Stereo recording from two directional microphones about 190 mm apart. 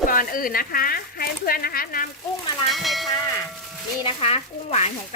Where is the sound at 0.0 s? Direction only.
50° left (ahead or behind).